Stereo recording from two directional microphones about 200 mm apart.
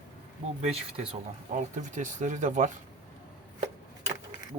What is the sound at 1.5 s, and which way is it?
Speech, 40° right (ahead or behind).